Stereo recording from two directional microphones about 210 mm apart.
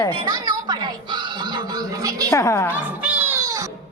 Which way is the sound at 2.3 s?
15° left (ahead or behind).